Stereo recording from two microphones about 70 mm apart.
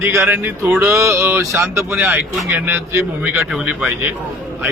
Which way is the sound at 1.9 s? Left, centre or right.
Right.